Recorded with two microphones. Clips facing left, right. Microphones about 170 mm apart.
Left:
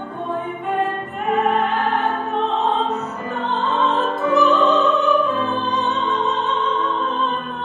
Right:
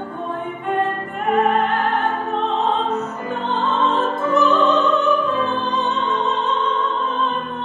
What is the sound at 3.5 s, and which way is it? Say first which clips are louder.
Music: even; centre (ahead or behind).